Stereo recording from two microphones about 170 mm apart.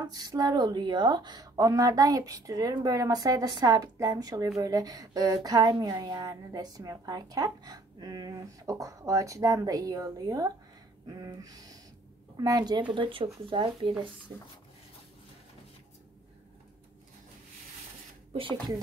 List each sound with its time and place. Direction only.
0.0 s speech: 20° right (ahead or behind)
18.3 s speech: 30° right (ahead or behind)